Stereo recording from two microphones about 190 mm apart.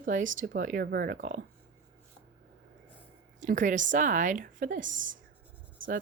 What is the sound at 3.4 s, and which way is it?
A woman's voice, 40° right (ahead or behind).